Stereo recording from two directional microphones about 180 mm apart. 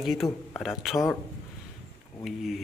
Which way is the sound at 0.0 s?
Centre (ahead or behind).